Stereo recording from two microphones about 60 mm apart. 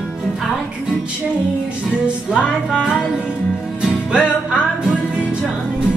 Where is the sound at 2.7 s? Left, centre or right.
Centre.